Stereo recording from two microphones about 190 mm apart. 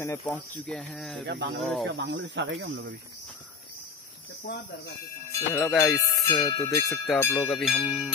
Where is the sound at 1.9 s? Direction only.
70° right (ahead or behind).